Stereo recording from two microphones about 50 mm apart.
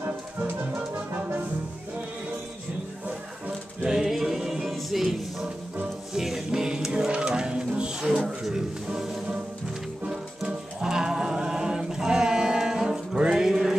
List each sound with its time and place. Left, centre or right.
3.8 s music: centre